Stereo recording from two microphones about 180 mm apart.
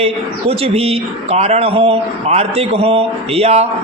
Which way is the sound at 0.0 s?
35° right (ahead or behind).